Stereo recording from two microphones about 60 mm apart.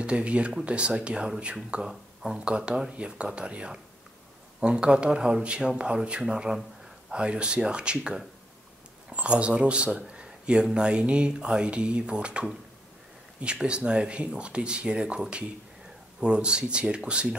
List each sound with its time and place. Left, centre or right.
0.0 s speech: centre